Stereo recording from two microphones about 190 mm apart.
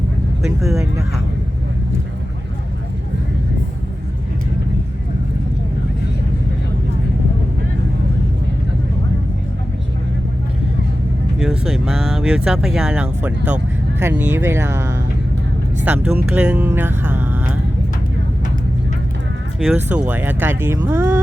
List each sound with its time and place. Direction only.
0.4 s speech: centre (ahead or behind)
11.3 s speech: centre (ahead or behind)
16.3 s music: 5° right (ahead or behind)
19.5 s speech: 5° right (ahead or behind)